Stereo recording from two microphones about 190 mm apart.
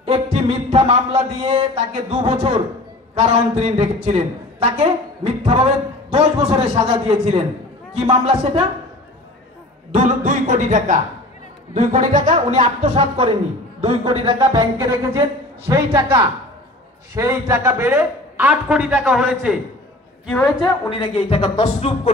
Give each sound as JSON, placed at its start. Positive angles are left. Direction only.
{"t": 0.0, "sound": "speech", "side_deg": -30}
{"t": 9.9, "sound": "speech", "side_deg": -40}
{"t": 17.1, "sound": "a man's voice", "side_deg": -15}
{"t": 20.6, "sound": "speech", "side_deg": 30}